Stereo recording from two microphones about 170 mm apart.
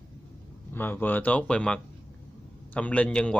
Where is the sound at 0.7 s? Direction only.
10° left (ahead or behind).